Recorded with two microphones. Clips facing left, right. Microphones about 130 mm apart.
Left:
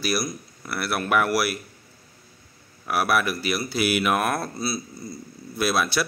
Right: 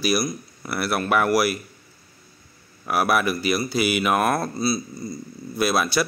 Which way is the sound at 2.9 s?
Centre (ahead or behind).